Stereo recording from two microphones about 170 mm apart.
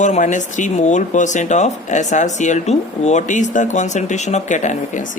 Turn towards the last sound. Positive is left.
turn(degrees=45)  # may be behind; listen again after turning